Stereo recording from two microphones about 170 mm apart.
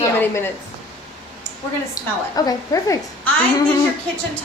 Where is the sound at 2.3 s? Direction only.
20° left (ahead or behind).